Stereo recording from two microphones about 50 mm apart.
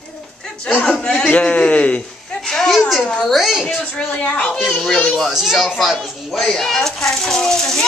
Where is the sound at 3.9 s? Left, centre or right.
Left.